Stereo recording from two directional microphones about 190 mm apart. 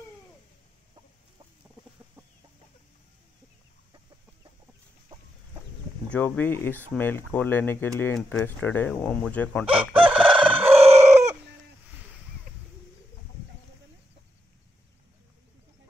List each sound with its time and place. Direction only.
6.0 s speech: 10° left (ahead or behind)
9.7 s crowing: 5° right (ahead or behind)
10.7 s chicken: 35° right (ahead or behind)